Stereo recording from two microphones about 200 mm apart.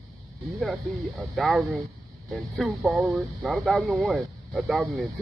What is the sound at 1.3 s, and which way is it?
Speech, centre (ahead or behind).